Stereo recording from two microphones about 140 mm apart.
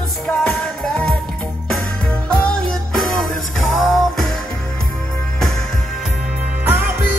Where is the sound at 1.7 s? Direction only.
10° left (ahead or behind).